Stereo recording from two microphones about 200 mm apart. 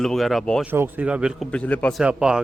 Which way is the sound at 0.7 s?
10° right (ahead or behind).